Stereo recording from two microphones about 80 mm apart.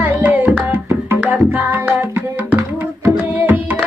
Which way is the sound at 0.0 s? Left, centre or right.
Right.